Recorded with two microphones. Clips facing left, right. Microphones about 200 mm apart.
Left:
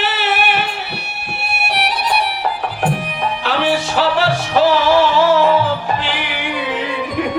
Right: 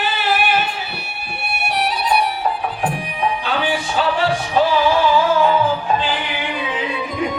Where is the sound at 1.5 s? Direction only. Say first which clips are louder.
Even; 80° left.